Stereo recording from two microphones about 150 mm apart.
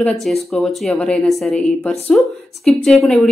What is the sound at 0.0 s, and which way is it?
Speech, centre (ahead or behind).